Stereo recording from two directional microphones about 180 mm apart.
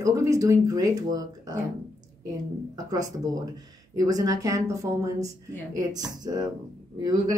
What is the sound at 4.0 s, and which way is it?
A woman's voice, 20° right (ahead or behind).